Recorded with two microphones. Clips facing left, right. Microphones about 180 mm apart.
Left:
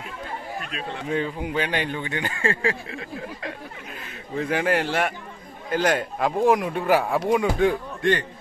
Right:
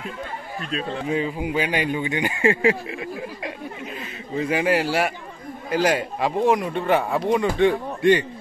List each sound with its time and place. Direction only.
1.1 s speech: 5° right (ahead or behind)
4.0 s a man's voice: 5° right (ahead or behind)